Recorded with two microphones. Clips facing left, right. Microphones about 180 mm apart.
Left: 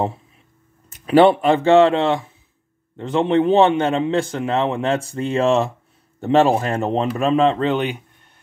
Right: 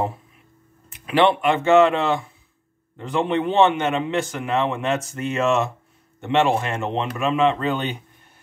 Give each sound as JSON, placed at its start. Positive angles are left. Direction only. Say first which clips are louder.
{"t": 1.0, "sound": "a man's voice", "louder": "left 5 dB", "side_deg": 35}
{"t": 7.6, "sound": "a man's voice", "louder": "left 4 dB", "side_deg": 20}